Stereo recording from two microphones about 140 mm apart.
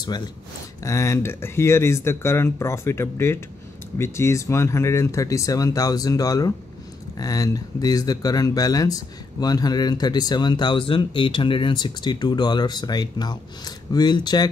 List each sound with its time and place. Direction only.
0.8 s speech: 20° left (ahead or behind)